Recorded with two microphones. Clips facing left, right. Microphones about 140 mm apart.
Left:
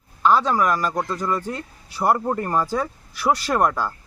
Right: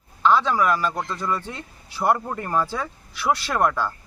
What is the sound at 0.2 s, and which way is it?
A man's voice, 10° left (ahead or behind).